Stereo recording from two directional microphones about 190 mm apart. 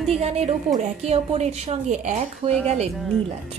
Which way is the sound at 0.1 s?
35° right (ahead or behind).